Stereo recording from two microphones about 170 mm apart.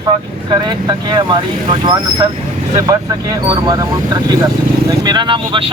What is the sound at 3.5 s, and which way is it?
Speech, 25° right (ahead or behind).